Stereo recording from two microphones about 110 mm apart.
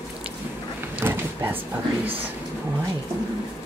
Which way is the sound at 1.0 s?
20° right (ahead or behind).